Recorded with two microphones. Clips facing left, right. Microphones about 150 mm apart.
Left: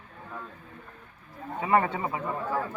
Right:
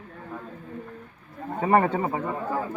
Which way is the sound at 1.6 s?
40° right (ahead or behind).